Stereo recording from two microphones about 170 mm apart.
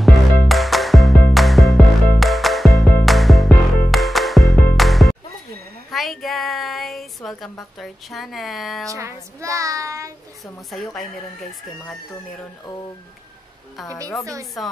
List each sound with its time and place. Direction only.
0.0 s music: centre (ahead or behind)
5.9 s a sound: centre (ahead or behind)
8.8 s speech: 20° right (ahead or behind)
10.7 s a woman's voice: centre (ahead or behind)
14.2 s speech: 20° right (ahead or behind)